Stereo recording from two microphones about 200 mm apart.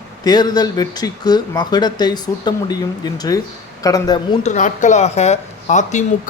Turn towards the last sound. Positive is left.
turn(degrees=35)  # may be behind; listen again after turning